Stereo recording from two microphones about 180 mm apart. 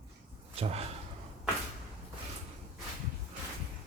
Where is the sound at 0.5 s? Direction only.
35° right (ahead or behind).